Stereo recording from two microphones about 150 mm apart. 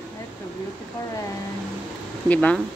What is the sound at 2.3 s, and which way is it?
Speech, 10° left (ahead or behind).